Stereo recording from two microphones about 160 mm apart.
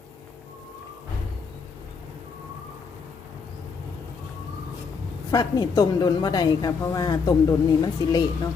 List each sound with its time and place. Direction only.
5.3 s a woman's voice: 25° left (ahead or behind)